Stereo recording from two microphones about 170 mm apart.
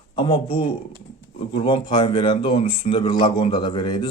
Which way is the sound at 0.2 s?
30° left (ahead or behind).